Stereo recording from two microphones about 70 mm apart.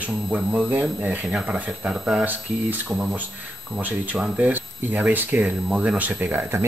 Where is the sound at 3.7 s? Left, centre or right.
Right.